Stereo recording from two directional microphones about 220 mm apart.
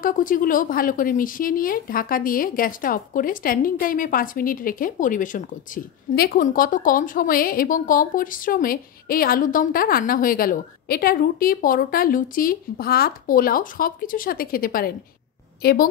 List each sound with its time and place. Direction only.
0.0 s a woman's voice: 40° left (ahead or behind)